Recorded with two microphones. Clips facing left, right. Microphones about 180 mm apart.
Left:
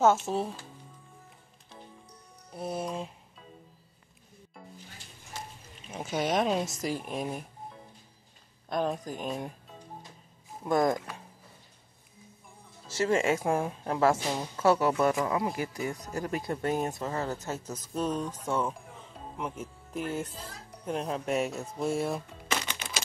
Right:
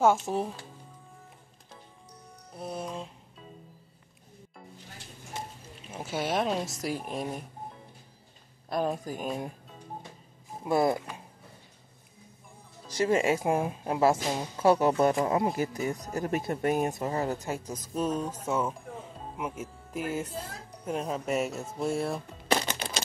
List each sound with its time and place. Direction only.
0.3 s speech: 5° right (ahead or behind)
2.5 s speech: centre (ahead or behind)
5.9 s speech: 5° right (ahead or behind)
8.6 s speech: centre (ahead or behind)
10.6 s speech: 10° right (ahead or behind)
12.9 s speech: 15° right (ahead or behind)
22.5 s typewriter: 35° right (ahead or behind)